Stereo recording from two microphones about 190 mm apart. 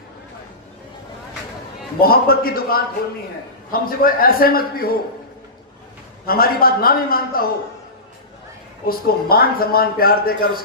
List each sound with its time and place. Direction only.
2.0 s speech: 50° left (ahead or behind)
6.2 s speech: 50° left (ahead or behind)
8.9 s speech: 50° left (ahead or behind)